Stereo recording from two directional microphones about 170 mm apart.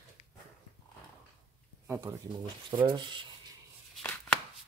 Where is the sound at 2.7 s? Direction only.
30° right (ahead or behind).